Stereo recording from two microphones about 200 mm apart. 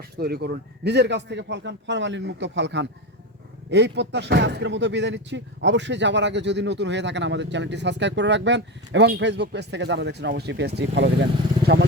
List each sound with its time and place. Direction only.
0.2 s speech: 50° right (ahead or behind)